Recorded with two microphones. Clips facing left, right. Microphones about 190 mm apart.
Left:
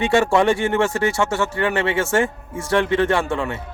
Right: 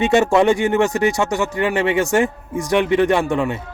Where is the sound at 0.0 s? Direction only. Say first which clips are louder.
Right 2 dB; 20° right (ahead or behind).